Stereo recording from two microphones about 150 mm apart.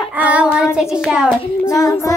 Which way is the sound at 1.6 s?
20° left (ahead or behind).